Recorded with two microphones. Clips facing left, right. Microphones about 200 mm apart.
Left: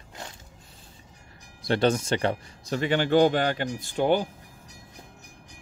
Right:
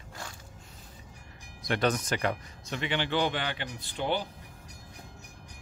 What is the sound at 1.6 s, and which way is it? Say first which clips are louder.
Speech: left 5 dB; 30° left (ahead or behind).